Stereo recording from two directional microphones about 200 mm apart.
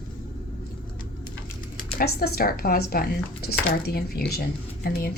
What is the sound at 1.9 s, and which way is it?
A woman's voice, 50° left (ahead or behind).